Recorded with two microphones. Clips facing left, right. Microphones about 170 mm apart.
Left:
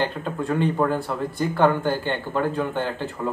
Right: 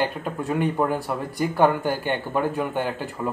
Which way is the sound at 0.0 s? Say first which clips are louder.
Even; 10° right (ahead or behind).